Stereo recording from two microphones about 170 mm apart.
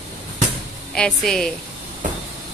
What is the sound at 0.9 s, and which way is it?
Speech, 5° left (ahead or behind).